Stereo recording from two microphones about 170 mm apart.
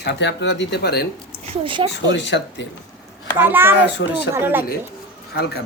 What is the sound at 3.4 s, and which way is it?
Speech, 10° right (ahead or behind).